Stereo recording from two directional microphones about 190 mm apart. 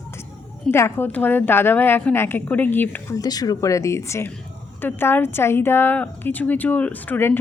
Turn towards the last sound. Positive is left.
turn(degrees=10)  # may be behind; listen again after turning